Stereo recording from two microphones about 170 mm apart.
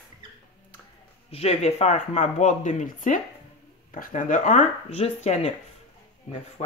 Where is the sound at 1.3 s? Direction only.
35° left (ahead or behind).